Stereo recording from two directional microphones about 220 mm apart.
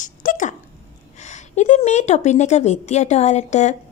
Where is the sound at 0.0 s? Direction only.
35° left (ahead or behind).